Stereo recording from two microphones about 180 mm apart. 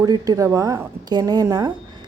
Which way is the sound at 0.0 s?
20° right (ahead or behind).